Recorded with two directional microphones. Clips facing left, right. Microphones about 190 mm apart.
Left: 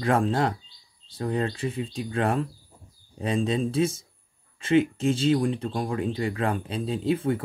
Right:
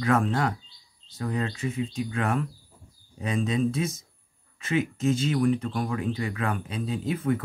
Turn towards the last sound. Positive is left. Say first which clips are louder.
# left 2 dB
turn(degrees=30)  # may be behind; listen again after turning